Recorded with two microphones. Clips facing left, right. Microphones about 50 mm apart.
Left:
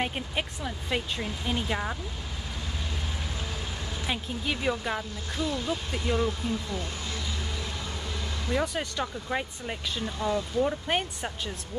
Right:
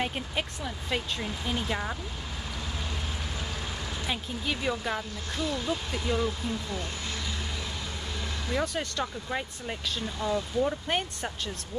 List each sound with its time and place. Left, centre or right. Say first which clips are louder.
0.0 s speech: left 1 dB; centre
4.1 s speech: left 2 dB; centre
6.2 s speech: left 1 dB; left
8.5 s speech: left 1 dB; centre